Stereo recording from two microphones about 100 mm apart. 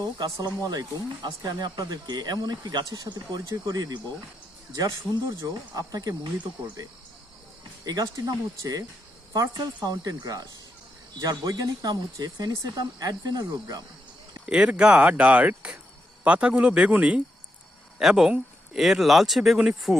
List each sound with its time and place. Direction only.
0.0 s speech: 40° right (ahead or behind)
7.9 s speech: 40° right (ahead or behind)
14.4 s speech: 10° right (ahead or behind)